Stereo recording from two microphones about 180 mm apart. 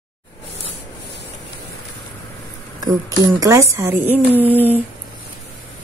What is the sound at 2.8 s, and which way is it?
A woman's voice, 20° right (ahead or behind).